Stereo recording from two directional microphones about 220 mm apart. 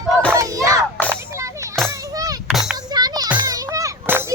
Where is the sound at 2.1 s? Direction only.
15° right (ahead or behind).